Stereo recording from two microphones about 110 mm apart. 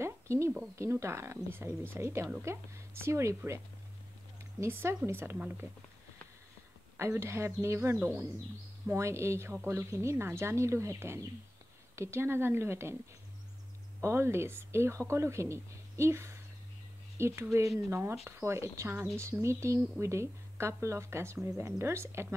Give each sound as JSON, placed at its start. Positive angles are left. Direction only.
{"t": 0.0, "sound": "a sound", "side_deg": -25}
{"t": 0.7, "sound": "speech", "side_deg": -25}
{"t": 7.2, "sound": "speech", "side_deg": -25}
{"t": 14.0, "sound": "speech", "side_deg": -25}